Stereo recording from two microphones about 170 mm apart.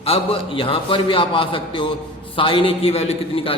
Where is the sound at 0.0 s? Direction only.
35° left (ahead or behind).